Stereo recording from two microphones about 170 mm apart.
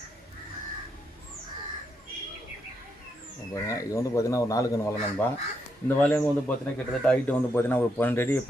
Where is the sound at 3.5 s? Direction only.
20° left (ahead or behind).